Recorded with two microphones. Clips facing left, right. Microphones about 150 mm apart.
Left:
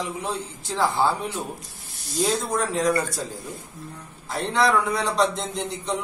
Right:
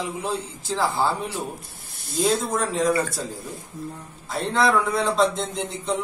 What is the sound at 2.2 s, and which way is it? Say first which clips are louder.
A man's voice: right 1 dB; centre (ahead or behind).